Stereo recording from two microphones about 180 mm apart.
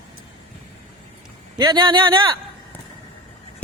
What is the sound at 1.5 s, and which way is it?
Speech, 20° right (ahead or behind).